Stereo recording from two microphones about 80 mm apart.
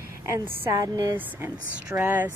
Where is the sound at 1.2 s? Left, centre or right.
Right.